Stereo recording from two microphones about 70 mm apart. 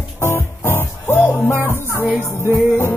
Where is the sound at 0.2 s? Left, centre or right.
Left.